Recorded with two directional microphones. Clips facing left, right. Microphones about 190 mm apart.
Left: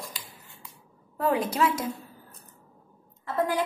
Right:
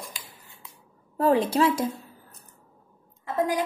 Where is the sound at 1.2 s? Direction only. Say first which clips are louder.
Right 4 dB; 30° right (ahead or behind).